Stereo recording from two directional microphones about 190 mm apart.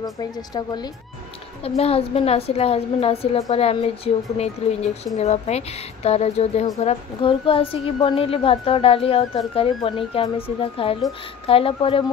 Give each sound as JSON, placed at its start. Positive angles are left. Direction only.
{"t": 0.0, "sound": "a woman's voice", "side_deg": 20}
{"t": 1.6, "sound": "a woman's voice", "side_deg": 30}